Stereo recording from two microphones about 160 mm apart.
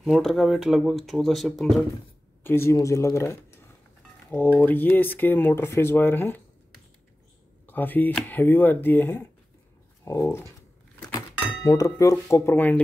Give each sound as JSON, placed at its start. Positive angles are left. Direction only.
{"t": 0.0, "sound": "speech", "side_deg": 0}
{"t": 2.4, "sound": "speech", "side_deg": 15}
{"t": 7.6, "sound": "speech", "side_deg": 10}